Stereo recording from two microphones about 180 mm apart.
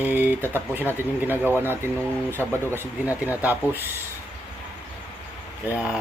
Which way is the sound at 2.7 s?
10° right (ahead or behind).